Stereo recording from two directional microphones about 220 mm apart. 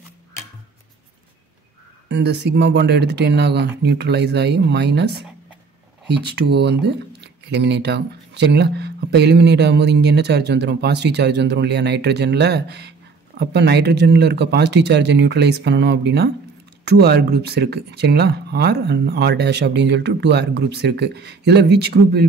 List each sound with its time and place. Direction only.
2.0 s speech: 50° right (ahead or behind)